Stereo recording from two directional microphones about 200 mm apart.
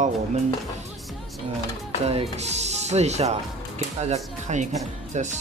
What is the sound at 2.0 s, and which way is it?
Speech, 30° right (ahead or behind).